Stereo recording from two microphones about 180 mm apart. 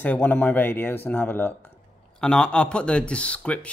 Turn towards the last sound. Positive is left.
turn(degrees=5)  # may be behind; listen again after turning